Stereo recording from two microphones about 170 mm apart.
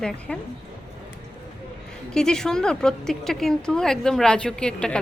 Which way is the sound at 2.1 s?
5° left (ahead or behind).